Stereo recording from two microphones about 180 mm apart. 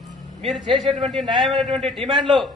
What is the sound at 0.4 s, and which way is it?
A man's voice, centre (ahead or behind).